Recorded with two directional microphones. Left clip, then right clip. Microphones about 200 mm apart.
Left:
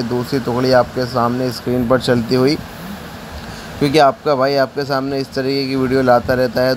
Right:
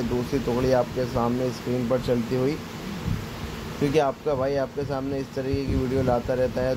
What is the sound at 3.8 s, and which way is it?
Speech, 25° left (ahead or behind).